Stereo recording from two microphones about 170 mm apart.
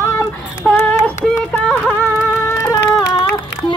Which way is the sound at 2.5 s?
20° left (ahead or behind).